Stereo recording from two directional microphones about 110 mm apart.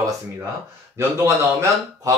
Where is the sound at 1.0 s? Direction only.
25° right (ahead or behind).